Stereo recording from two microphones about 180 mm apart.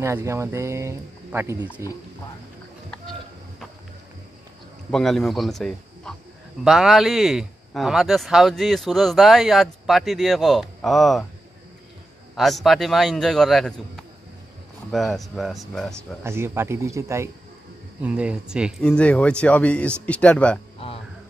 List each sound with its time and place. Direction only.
0.0 s speech: 15° right (ahead or behind)
4.9 s speech: centre (ahead or behind)
12.4 s speech: centre (ahead or behind)
16.3 s speech: 15° right (ahead or behind)
18.0 s speech: 5° right (ahead or behind)
18.8 s speech: 5° left (ahead or behind)